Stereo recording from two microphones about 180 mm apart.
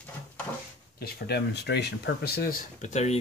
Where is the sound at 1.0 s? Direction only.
65° left (ahead or behind).